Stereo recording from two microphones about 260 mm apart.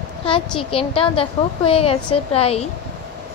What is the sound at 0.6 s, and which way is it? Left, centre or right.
A woman's voice, left.